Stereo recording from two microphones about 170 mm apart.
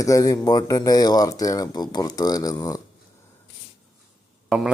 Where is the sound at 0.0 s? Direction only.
20° left (ahead or behind).